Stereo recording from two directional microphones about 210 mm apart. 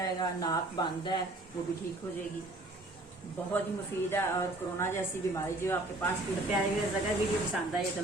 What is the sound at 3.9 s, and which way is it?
A woman's voice, 10° left (ahead or behind).